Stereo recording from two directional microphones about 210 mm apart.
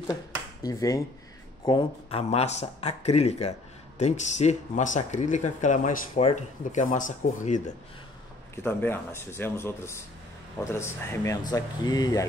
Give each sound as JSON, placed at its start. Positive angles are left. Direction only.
{"t": 0.1, "sound": "speech", "side_deg": 15}
{"t": 8.6, "sound": "speech", "side_deg": 10}